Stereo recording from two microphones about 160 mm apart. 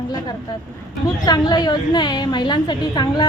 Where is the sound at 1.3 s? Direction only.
25° left (ahead or behind).